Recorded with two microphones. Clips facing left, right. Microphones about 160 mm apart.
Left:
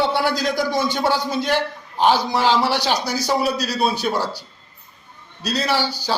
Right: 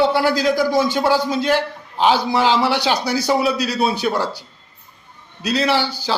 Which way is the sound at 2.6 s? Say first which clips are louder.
Right 2 dB; 10° right (ahead or behind).